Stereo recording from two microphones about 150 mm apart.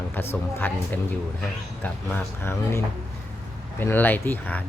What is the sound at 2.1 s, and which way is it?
A man's voice, 15° left (ahead or behind).